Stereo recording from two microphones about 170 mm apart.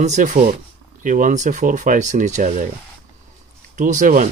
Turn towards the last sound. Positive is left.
turn(degrees=-50)  # may be behind; listen again after turning